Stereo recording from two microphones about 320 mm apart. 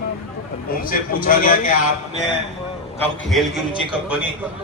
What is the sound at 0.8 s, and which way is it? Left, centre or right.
Speech, left.